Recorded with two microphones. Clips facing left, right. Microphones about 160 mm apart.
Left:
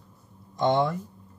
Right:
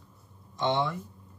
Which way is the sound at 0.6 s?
45° left (ahead or behind).